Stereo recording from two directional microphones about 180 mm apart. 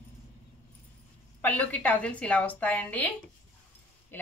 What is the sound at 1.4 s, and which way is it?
Speech, 10° left (ahead or behind).